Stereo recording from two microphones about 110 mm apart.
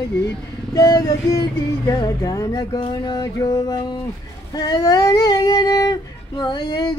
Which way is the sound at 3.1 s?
30° left (ahead or behind).